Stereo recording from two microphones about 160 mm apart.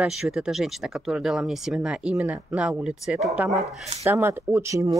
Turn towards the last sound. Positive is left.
turn(degrees=-20)  # may be behind; listen again after turning